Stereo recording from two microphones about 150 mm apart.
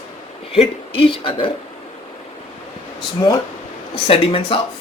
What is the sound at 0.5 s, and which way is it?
Speech, 40° left (ahead or behind).